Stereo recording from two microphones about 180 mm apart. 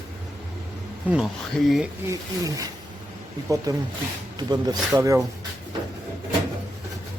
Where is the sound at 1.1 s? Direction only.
Centre (ahead or behind).